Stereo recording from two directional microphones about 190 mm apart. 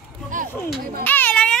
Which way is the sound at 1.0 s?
10° left (ahead or behind).